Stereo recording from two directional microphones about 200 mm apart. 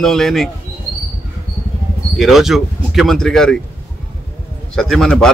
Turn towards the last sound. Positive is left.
turn(degrees=5)  # may be behind; listen again after turning